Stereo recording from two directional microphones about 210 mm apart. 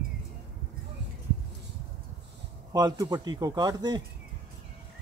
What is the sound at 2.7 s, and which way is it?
A man's voice, 15° right (ahead or behind).